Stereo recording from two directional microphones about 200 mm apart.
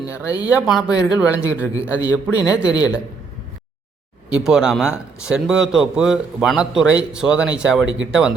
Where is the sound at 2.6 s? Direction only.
20° left (ahead or behind).